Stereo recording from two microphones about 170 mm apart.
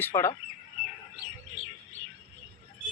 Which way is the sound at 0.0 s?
15° left (ahead or behind).